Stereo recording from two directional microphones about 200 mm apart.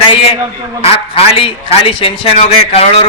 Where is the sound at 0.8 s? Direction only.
30° left (ahead or behind).